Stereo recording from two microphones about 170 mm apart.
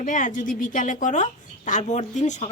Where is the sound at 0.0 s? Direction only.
50° left (ahead or behind).